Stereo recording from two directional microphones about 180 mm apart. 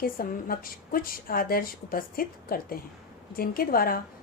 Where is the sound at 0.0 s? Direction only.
55° left (ahead or behind).